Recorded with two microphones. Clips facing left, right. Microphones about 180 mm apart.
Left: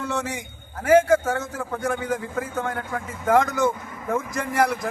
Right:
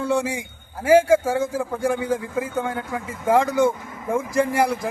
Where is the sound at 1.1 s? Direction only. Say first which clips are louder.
Right 3 dB; 10° right (ahead or behind).